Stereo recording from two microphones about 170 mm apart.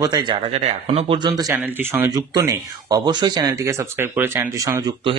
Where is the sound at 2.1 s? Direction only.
25° right (ahead or behind).